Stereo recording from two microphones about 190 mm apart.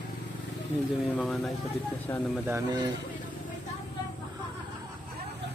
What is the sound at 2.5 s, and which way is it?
Speech, 15° right (ahead or behind).